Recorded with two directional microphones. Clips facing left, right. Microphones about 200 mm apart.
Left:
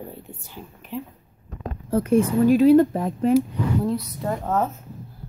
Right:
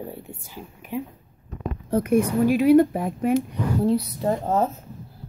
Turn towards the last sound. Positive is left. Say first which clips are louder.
# right 2 dB
turn(degrees=-30)  # may be behind; listen again after turning